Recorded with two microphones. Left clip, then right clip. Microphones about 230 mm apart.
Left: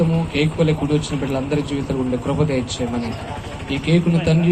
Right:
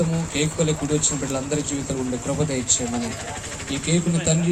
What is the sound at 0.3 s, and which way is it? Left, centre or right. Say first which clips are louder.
Speech: left 4 dB; right.